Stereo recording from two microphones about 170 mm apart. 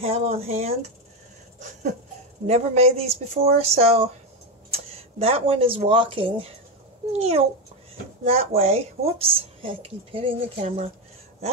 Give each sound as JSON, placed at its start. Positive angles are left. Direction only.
{"t": 0.0, "sound": "speech", "side_deg": -35}
{"t": 1.6, "sound": "wheeze", "side_deg": -45}
{"t": 2.4, "sound": "speech", "side_deg": -40}